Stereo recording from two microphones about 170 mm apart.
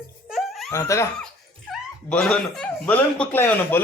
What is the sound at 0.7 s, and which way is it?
Speech, 20° left (ahead or behind).